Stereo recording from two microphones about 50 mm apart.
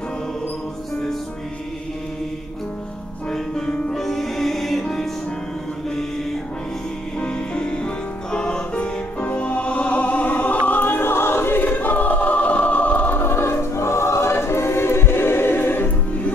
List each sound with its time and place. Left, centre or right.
3.3 s music: centre
7.2 s music: left
11.6 s choir: left